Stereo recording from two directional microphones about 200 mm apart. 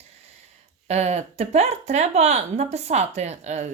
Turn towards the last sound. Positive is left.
turn(degrees=-35)  # may be behind; listen again after turning